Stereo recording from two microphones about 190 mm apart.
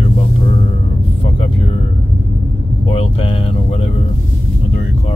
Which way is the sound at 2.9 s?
30° left (ahead or behind).